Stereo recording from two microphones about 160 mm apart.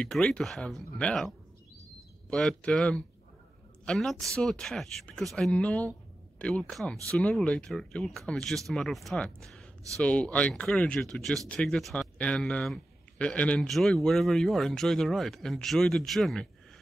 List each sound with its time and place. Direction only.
0.0 s speech: 5° left (ahead or behind)